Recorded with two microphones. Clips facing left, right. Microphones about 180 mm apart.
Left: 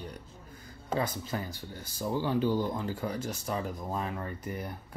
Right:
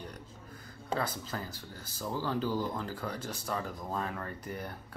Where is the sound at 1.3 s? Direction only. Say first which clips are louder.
Left 4 dB; 15° left (ahead or behind).